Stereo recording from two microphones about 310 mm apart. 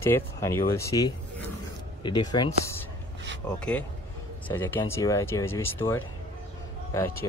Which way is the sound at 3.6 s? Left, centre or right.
Centre.